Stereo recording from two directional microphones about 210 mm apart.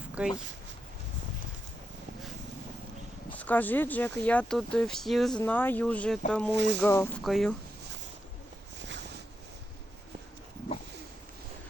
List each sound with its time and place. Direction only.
0.2 s speech: 5° right (ahead or behind)
3.3 s speech: 10° left (ahead or behind)
6.5 s speech: 55° right (ahead or behind)
6.8 s speech: 10° left (ahead or behind)
7.3 s speech: centre (ahead or behind)
8.8 s a sound: 60° right (ahead or behind)